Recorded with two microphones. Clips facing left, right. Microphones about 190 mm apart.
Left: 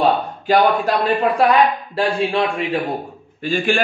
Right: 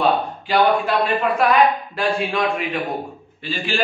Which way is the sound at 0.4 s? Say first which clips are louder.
Left 3 dB; 40° left (ahead or behind).